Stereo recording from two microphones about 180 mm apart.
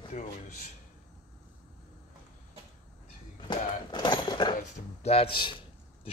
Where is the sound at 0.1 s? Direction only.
40° left (ahead or behind).